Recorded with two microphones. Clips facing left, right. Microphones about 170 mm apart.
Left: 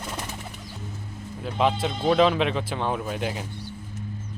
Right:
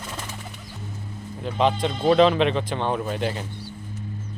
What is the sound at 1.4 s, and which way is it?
Speech, 5° left (ahead or behind).